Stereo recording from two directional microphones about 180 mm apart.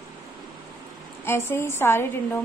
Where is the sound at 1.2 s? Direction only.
10° left (ahead or behind).